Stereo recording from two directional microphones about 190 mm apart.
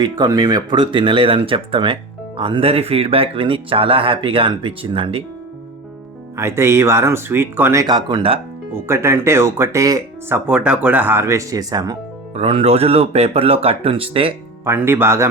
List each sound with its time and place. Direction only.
0.0 s speech: 20° right (ahead or behind)
6.3 s speech: 15° right (ahead or behind)
8.7 s speech: 15° right (ahead or behind)
12.3 s speech: 30° right (ahead or behind)
14.6 s speech: 10° right (ahead or behind)